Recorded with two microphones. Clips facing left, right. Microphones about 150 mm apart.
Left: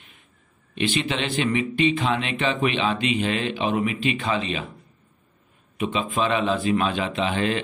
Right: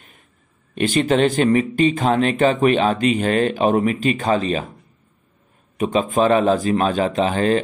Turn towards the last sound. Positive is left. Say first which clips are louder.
# right 6 dB
turn(degrees=-40)  # may be behind; listen again after turning